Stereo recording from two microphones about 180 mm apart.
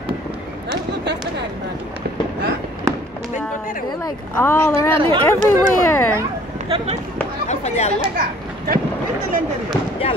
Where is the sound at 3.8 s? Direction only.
20° left (ahead or behind).